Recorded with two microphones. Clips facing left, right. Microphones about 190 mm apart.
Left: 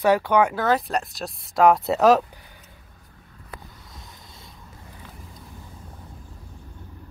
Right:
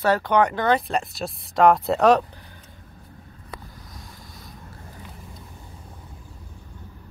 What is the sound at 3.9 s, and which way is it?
Boat, 25° left (ahead or behind).